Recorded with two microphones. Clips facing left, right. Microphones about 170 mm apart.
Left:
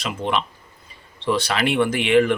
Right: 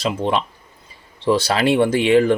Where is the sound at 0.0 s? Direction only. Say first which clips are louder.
Right 4 dB; 35° right (ahead or behind).